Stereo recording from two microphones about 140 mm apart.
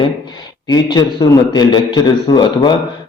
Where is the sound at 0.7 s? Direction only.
30° left (ahead or behind).